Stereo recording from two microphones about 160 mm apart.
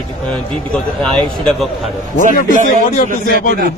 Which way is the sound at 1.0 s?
5° left (ahead or behind).